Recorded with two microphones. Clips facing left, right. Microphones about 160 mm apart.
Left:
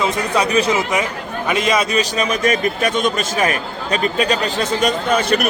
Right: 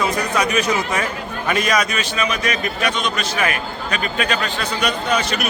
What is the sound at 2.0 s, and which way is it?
Speech, 40° left (ahead or behind).